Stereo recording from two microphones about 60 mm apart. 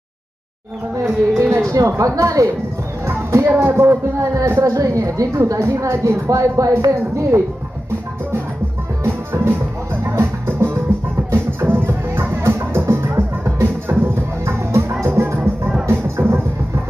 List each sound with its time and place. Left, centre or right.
1.4 s a woman's voice: right
3.1 s music: right
3.4 s speech: right
4.7 s a woman's voice: right
9.0 s music: right